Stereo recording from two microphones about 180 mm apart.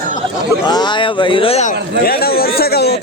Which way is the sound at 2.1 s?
60° left (ahead or behind).